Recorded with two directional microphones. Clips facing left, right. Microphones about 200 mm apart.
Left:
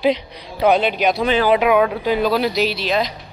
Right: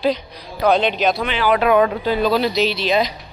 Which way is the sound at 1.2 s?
40° left (ahead or behind).